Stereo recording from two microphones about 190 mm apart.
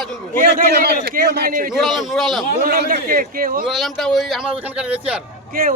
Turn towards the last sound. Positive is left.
turn(degrees=-50)  # may be behind; listen again after turning